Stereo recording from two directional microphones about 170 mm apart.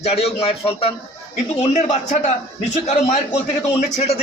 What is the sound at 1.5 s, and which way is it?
Speech, 45° left (ahead or behind).